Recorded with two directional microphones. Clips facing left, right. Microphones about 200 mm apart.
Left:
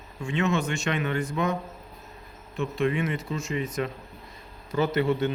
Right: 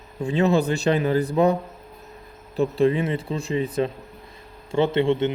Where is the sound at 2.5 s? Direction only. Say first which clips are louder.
Right 6 dB; 35° right (ahead or behind).